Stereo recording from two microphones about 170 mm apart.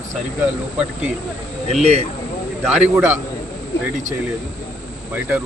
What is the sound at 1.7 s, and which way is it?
Speech, 40° right (ahead or behind).